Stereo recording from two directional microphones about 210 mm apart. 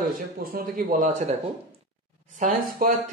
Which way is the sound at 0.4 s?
45° right (ahead or behind).